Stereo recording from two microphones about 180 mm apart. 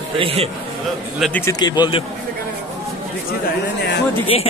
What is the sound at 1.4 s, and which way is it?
Speech, 25° left (ahead or behind).